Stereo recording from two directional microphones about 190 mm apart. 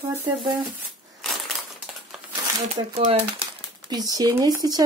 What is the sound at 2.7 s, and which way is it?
Speech, 35° right (ahead or behind).